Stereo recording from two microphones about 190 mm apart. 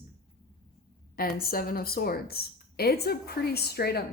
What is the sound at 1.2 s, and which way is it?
Speech, 50° left (ahead or behind).